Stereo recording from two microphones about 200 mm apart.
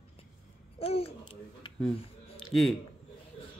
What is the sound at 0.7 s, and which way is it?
Speech, 30° left (ahead or behind).